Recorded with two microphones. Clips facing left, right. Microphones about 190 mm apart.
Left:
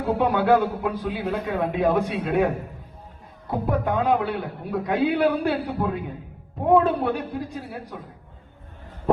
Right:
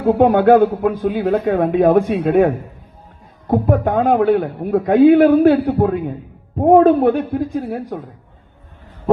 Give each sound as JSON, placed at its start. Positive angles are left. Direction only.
{"t": 0.0, "sound": "a man's voice", "side_deg": -50}